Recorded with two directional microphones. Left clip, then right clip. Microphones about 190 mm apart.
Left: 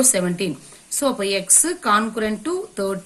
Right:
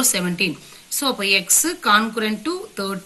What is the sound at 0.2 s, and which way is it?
A woman's voice, 55° left (ahead or behind).